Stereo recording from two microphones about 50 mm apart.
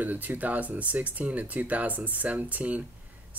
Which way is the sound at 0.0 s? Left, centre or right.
Right.